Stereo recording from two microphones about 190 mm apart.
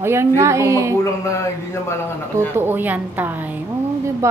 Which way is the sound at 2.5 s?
10° right (ahead or behind).